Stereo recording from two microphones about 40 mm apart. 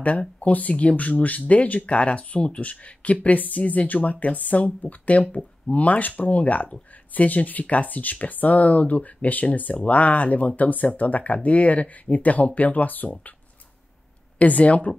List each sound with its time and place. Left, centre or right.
0.4 s speech: left
14.4 s speech: left